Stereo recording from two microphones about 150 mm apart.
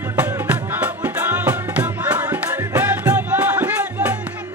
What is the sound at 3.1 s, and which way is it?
Music, 10° right (ahead or behind).